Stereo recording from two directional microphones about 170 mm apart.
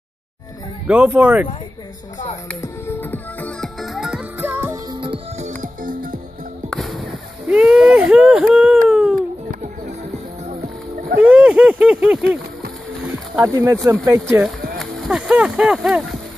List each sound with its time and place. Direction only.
0.8 s speech: 10° right (ahead or behind)
2.6 s music: 15° left (ahead or behind); by 4.7 s 15° right (ahead or behind)
5.0 s music: 30° right (ahead or behind)
5.5 s music: 50° right (ahead or behind)
6.7 s music: centre (ahead or behind)
7.4 s speech: 5° right (ahead or behind)
8.8 s a sound: 5° right (ahead or behind)
9.5 s music: 55° right (ahead or behind)
11.1 s speech: 5° right (ahead or behind)
13.1 s boat: 20° right (ahead or behind)
14.0 s speech: 15° right (ahead or behind)
14.8 s speech: 5° right (ahead or behind)